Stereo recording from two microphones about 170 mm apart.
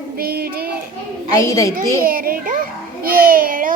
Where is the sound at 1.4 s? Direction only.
20° left (ahead or behind).